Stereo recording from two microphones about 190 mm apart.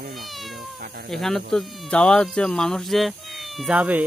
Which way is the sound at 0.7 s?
55° right (ahead or behind).